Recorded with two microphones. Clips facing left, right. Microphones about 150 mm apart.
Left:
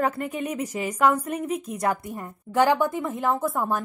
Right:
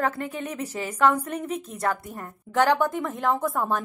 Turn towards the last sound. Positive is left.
turn(degrees=5)  # may be behind; listen again after turning